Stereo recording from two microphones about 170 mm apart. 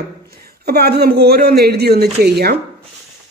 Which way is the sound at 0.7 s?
70° right (ahead or behind).